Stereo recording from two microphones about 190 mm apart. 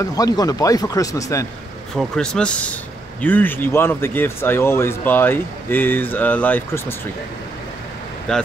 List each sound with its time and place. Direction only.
0.0 s speech: 20° left (ahead or behind)
2.0 s speech: 5° left (ahead or behind)
8.3 s speech: 5° left (ahead or behind)